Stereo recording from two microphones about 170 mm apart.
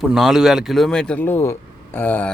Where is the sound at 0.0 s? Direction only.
Centre (ahead or behind).